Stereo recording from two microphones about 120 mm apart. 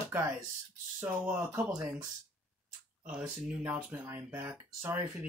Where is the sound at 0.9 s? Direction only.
20° right (ahead or behind).